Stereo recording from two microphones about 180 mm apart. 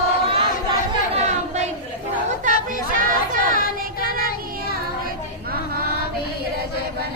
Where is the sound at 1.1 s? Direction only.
40° right (ahead or behind).